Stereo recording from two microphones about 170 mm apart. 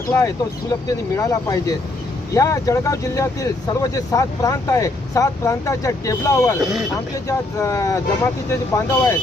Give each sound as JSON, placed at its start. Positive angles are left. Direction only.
{"t": 0.9, "sound": "speech", "side_deg": 20}
{"t": 6.6, "sound": "speech", "side_deg": 0}
{"t": 7.3, "sound": "speech", "side_deg": 15}